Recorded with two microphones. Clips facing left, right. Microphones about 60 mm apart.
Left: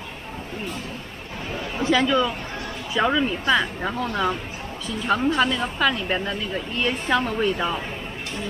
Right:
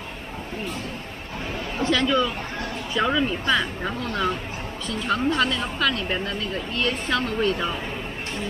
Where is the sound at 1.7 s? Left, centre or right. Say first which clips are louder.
Left 2 dB; left.